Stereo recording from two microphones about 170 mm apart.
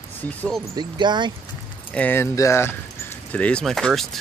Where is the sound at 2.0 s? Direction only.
10° left (ahead or behind).